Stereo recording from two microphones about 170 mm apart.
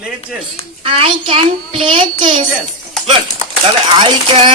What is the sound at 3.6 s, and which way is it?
Speech, 30° right (ahead or behind).